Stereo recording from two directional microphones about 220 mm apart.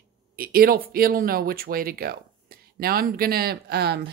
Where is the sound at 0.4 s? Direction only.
40° right (ahead or behind).